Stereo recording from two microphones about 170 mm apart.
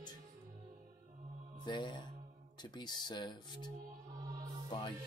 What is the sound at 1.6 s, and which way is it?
Speech, 25° left (ahead or behind).